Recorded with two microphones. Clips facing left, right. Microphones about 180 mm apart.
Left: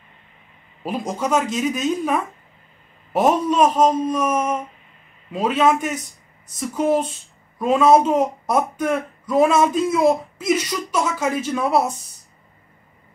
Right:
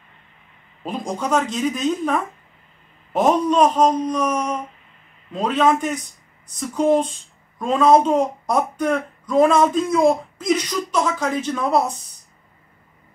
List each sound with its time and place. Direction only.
0.8 s speech: 5° left (ahead or behind)